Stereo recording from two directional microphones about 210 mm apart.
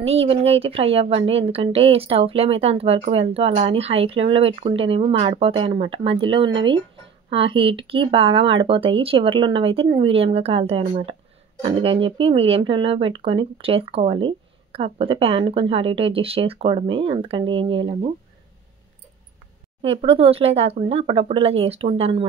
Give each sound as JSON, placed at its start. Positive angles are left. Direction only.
{"t": 0.0, "sound": "a woman's voice", "side_deg": -30}
{"t": 19.8, "sound": "a woman's voice", "side_deg": -25}